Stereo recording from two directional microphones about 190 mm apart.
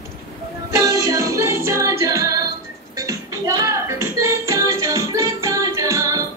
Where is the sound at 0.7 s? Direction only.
15° right (ahead or behind).